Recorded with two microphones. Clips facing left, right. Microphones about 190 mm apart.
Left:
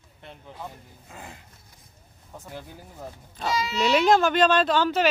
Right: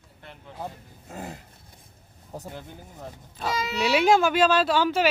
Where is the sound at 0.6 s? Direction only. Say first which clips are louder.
Right 5 dB; 40° right (ahead or behind).